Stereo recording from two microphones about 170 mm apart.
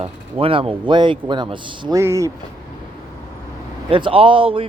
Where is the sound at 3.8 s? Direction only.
30° right (ahead or behind).